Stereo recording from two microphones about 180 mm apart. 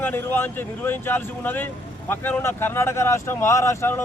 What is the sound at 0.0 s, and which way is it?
Speech, 10° left (ahead or behind).